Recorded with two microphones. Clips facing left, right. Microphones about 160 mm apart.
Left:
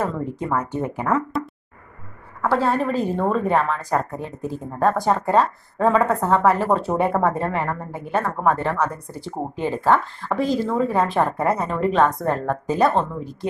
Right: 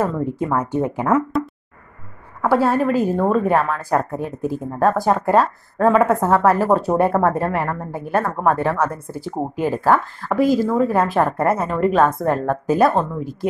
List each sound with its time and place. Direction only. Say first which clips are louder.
0.0 s a woman's voice: right 4 dB; 10° right (ahead or behind)
2.4 s a woman's voice: right 3 dB; 10° right (ahead or behind)
8.8 s speech: right 3 dB; 15° left (ahead or behind)
9.1 s a woman's voice: right 4 dB; 5° right (ahead or behind)